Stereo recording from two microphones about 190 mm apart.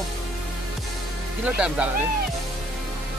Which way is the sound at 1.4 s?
5° right (ahead or behind).